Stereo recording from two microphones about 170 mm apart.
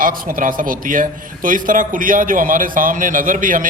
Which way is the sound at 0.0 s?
55° right (ahead or behind).